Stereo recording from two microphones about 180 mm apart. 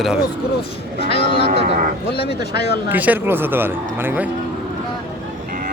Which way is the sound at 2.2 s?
65° left (ahead or behind).